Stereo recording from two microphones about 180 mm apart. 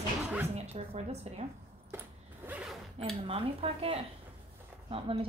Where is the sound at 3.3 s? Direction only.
30° right (ahead or behind).